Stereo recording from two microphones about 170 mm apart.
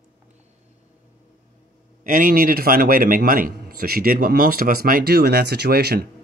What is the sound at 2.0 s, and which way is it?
A man's voice, 55° right (ahead or behind).